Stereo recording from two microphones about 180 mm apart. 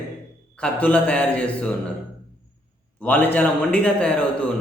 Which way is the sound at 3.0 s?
10° left (ahead or behind).